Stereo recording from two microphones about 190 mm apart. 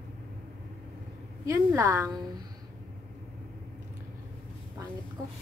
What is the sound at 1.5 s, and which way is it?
Speech, 15° right (ahead or behind).